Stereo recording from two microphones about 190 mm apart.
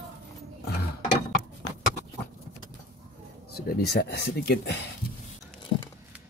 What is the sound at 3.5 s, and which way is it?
Speech, 55° left (ahead or behind).